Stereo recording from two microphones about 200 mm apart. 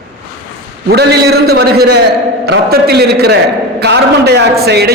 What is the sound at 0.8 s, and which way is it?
A man's voice, 55° right (ahead or behind).